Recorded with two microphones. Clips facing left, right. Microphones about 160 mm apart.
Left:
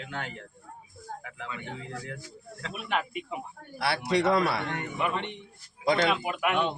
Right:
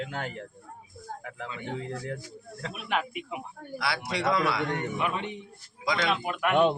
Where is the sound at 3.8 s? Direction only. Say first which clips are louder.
Left 4 dB; 55° left (ahead or behind).